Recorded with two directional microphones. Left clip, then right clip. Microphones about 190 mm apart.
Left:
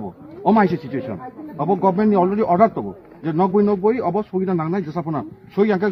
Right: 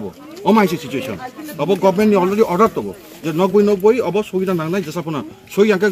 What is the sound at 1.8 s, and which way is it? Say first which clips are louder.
A man's voice: right 3 dB; 15° left (ahead or behind).